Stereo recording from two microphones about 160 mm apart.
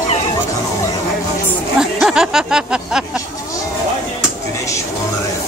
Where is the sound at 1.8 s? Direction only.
5° right (ahead or behind).